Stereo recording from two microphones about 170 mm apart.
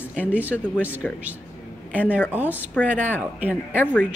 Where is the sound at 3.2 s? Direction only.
10° right (ahead or behind).